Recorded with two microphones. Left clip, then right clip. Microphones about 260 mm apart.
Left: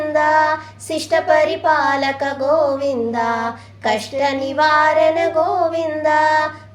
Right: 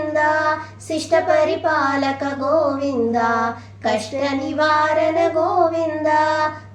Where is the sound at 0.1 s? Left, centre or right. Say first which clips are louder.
Left 3 dB; left.